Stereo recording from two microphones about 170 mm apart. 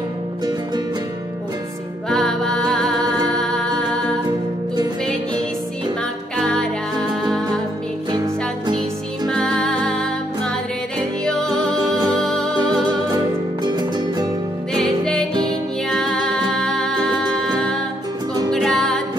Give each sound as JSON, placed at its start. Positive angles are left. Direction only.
{"t": 2.0, "sound": "music", "side_deg": 5}
{"t": 6.3, "sound": "music", "side_deg": 5}
{"t": 9.3, "sound": "music", "side_deg": 5}
{"t": 13.7, "sound": "music", "side_deg": -25}
{"t": 14.7, "sound": "music", "side_deg": 5}
{"t": 18.5, "sound": "music", "side_deg": 5}